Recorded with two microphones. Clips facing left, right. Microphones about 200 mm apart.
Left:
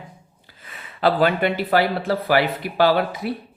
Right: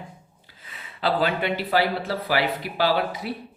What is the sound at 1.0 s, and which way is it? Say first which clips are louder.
Speech: left 5 dB; 55° left (ahead or behind).